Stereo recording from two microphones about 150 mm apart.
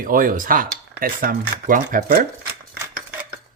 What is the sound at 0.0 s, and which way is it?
Speech, 65° right (ahead or behind).